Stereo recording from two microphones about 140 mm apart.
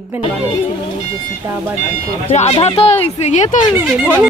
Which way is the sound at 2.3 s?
50° left (ahead or behind).